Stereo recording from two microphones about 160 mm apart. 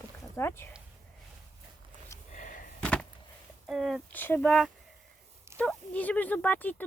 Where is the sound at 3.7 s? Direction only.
Centre (ahead or behind).